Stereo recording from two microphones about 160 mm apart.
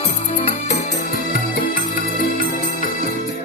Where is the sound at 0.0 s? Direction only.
50° left (ahead or behind).